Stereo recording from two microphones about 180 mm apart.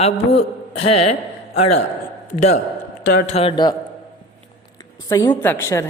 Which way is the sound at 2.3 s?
40° left (ahead or behind).